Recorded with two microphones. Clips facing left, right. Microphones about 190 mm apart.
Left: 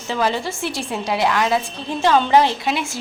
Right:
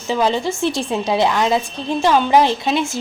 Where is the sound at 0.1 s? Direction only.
20° right (ahead or behind).